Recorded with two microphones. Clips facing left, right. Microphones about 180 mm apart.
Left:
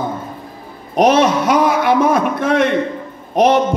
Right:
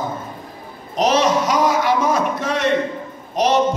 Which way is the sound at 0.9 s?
55° left (ahead or behind).